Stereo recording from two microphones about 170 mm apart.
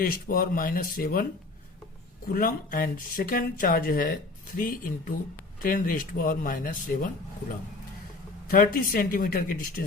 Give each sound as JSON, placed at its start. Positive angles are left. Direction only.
{"t": 0.0, "sound": "speech", "side_deg": 55}
{"t": 2.3, "sound": "speech", "side_deg": 55}
{"t": 8.4, "sound": "speech", "side_deg": 55}